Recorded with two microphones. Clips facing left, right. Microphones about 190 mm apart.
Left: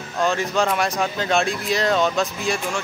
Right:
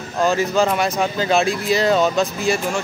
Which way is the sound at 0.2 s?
5° right (ahead or behind).